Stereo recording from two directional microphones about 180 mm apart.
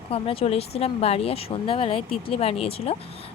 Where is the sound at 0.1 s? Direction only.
30° left (ahead or behind).